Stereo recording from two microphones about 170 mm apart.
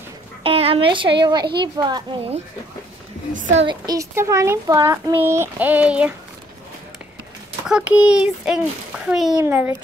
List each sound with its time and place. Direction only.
0.4 s a child's voice: 35° right (ahead or behind)
3.3 s a child's voice: 50° right (ahead or behind)
3.6 s a child's voice: 20° right (ahead or behind)
7.6 s a child's voice: 5° right (ahead or behind)
9.4 s a child's voice: 15° right (ahead or behind)